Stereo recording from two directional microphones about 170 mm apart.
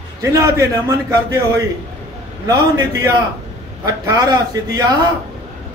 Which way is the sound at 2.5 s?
20° right (ahead or behind).